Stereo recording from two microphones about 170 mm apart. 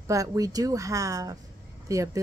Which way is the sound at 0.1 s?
20° right (ahead or behind).